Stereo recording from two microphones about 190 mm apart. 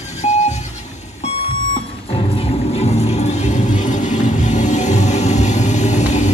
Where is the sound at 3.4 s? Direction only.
40° left (ahead or behind).